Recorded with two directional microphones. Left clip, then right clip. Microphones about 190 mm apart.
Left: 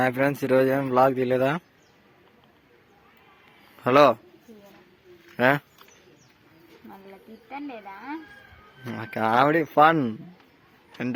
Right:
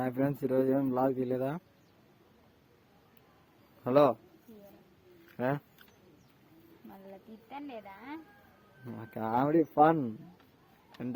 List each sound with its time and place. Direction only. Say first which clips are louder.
0.0 s speech: left 9 dB; centre (ahead or behind)
3.8 s speech: left 8 dB; centre (ahead or behind)
5.4 s speech: left 12 dB; 5° left (ahead or behind)
7.5 s speech: left 7 dB; 20° right (ahead or behind)
8.8 s speech: left 12 dB; centre (ahead or behind)